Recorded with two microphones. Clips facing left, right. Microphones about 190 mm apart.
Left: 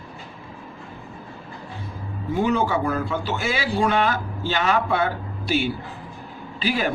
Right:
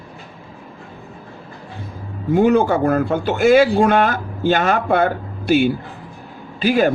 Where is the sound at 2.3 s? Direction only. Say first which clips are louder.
Right 7 dB; 50° right (ahead or behind).